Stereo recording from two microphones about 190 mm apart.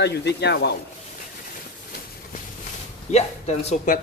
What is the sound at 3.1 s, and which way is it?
Speech, 40° left (ahead or behind).